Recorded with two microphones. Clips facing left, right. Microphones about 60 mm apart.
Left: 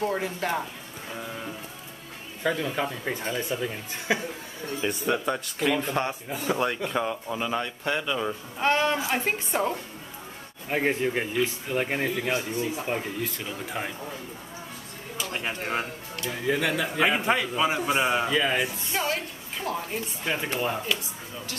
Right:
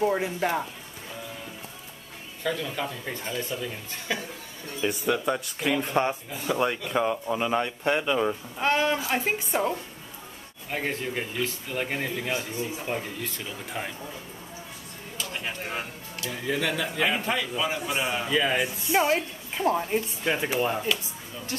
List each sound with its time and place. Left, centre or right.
0.0 s a man's voice: centre
2.4 s speech: left
4.8 s a man's voice: centre
8.5 s speech: centre
10.7 s speech: centre
15.1 s a sound: centre
16.3 s speech: centre
18.3 s speech: centre
18.9 s a woman's voice: right
20.2 s speech: centre